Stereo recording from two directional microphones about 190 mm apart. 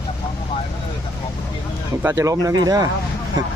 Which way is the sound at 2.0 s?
15° right (ahead or behind).